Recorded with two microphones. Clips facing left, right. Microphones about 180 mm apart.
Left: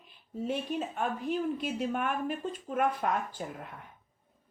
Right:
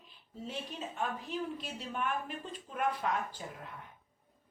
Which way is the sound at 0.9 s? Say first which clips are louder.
Left 3 dB; 55° left (ahead or behind).